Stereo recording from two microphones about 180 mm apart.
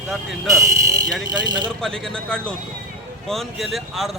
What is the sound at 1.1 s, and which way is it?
Speech, centre (ahead or behind).